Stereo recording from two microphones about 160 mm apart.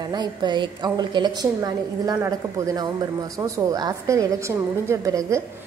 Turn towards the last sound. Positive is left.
turn(degrees=-20)  # may be behind; listen again after turning